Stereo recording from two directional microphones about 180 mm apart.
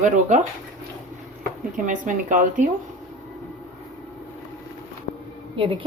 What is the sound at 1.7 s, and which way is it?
Speech, 45° right (ahead or behind).